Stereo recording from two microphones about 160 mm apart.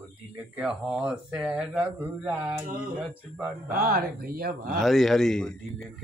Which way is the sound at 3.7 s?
75° right (ahead or behind).